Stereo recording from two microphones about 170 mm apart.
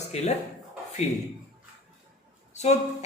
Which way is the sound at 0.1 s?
40° left (ahead or behind).